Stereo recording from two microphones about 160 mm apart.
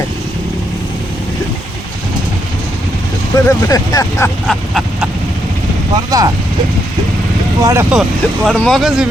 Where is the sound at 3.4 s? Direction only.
20° left (ahead or behind).